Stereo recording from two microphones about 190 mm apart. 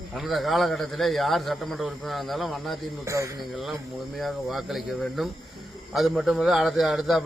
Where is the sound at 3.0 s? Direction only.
15° right (ahead or behind).